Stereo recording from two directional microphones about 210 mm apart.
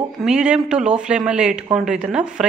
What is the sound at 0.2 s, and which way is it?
Speech, 5° right (ahead or behind).